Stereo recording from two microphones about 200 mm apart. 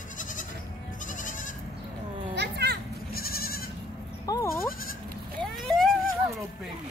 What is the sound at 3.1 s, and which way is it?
Goat, 50° left (ahead or behind).